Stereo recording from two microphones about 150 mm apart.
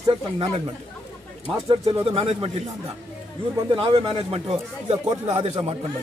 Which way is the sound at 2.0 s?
35° right (ahead or behind).